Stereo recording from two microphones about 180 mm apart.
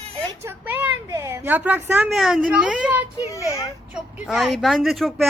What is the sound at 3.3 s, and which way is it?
Speech, 15° left (ahead or behind).